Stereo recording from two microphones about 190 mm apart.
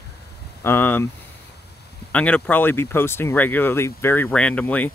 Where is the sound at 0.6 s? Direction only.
10° left (ahead or behind).